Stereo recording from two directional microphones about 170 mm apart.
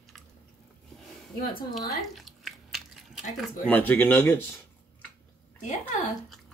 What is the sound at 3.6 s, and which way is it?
Speech, 10° left (ahead or behind).